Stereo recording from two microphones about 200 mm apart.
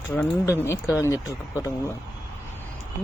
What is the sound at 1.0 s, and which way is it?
Speech, 15° left (ahead or behind).